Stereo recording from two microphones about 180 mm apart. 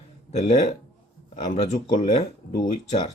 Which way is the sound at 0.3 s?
40° left (ahead or behind).